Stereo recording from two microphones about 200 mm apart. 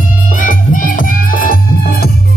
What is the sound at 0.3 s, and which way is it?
Music, 40° left (ahead or behind).